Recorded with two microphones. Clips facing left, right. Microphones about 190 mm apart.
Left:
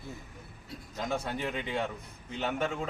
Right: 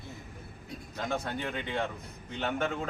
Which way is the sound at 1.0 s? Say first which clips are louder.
Even; 5° left (ahead or behind).